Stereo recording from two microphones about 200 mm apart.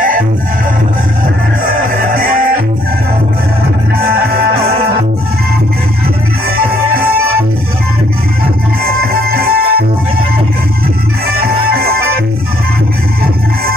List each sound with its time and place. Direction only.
2.1 s music: 45° right (ahead or behind)
6.9 s music: 45° right (ahead or behind)
9.0 s music: 50° right (ahead or behind)
11.2 s music: 50° right (ahead or behind)